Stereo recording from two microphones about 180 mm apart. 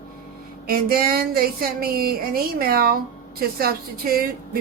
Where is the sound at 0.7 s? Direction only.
55° right (ahead or behind).